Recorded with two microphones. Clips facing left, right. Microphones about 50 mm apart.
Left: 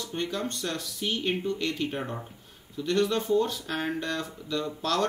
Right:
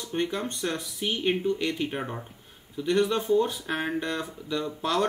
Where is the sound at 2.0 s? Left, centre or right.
Centre.